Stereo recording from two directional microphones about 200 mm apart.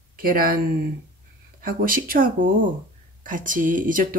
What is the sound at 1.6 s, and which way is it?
Speech, 45° right (ahead or behind).